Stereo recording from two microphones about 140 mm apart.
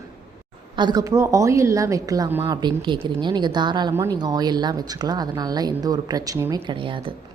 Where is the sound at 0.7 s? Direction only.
30° right (ahead or behind); by 2.5 s 15° right (ahead or behind).